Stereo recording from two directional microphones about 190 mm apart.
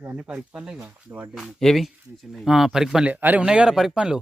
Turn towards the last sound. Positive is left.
turn(degrees=-5)  # may be behind; listen again after turning